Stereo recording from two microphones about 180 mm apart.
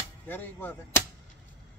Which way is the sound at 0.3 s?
10° left (ahead or behind).